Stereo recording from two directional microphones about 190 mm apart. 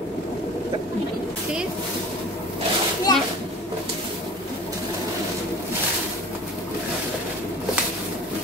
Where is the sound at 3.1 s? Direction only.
20° left (ahead or behind).